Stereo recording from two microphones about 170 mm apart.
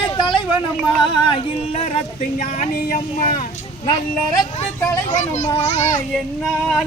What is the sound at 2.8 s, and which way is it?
Speech, 55° left (ahead or behind).